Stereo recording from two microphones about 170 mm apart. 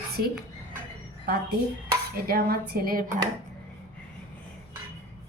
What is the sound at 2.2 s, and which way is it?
Speech, 65° right (ahead or behind).